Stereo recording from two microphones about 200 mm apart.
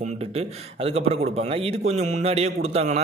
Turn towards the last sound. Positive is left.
turn(degrees=-35)  # may be behind; listen again after turning